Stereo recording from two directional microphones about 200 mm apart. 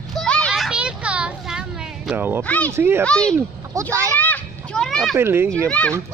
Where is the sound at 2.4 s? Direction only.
10° left (ahead or behind).